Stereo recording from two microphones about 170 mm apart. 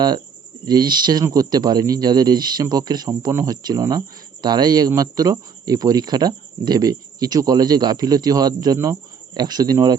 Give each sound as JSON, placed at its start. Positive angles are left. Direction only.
{"t": 0.6, "sound": "speech", "side_deg": -25}